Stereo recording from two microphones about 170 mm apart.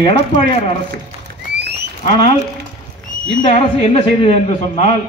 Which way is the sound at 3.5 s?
35° left (ahead or behind).